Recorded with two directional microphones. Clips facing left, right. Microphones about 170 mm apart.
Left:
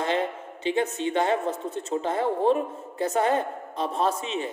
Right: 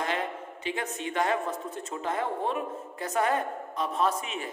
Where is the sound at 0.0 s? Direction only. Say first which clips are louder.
Left 5 dB; 30° left (ahead or behind).